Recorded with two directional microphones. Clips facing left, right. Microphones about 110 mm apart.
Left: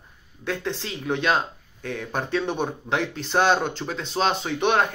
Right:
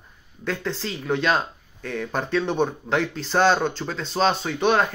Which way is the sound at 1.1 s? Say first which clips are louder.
Right 1 dB; 20° left (ahead or behind).